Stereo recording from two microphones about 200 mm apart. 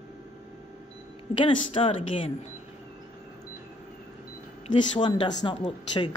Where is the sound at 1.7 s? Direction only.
25° left (ahead or behind).